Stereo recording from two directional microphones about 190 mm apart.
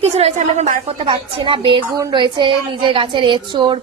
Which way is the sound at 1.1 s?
25° right (ahead or behind).